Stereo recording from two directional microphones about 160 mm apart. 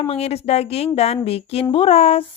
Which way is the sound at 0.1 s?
40° left (ahead or behind).